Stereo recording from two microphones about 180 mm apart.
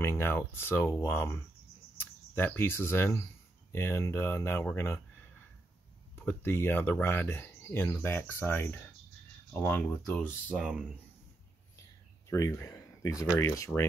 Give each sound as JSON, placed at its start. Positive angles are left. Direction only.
{"t": 0.0, "sound": "speech", "side_deg": 15}
{"t": 6.1, "sound": "speech", "side_deg": 15}
{"t": 10.5, "sound": "speech", "side_deg": -5}
{"t": 12.3, "sound": "speech", "side_deg": 15}